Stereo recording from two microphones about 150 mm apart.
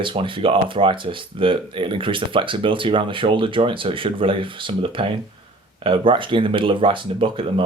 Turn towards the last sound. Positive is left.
turn(degrees=-35)  # may be behind; listen again after turning